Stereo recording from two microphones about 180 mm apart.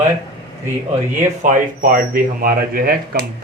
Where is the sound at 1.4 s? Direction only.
45° right (ahead or behind).